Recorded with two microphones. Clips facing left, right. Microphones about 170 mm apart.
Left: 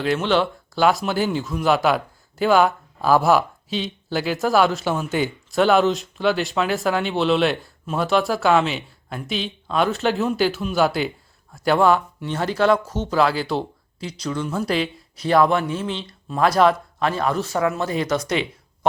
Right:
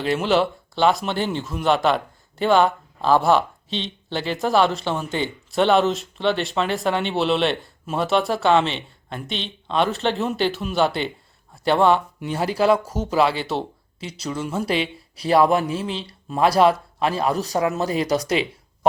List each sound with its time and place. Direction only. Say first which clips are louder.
0.0 s speech: even; centre (ahead or behind)
15.2 s speech: even; 35° right (ahead or behind)